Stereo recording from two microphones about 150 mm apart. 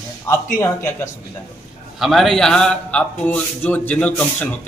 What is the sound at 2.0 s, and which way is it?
A man's voice, centre (ahead or behind).